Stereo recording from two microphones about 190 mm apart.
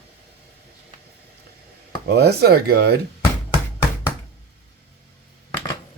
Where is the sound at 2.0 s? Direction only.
60° right (ahead or behind).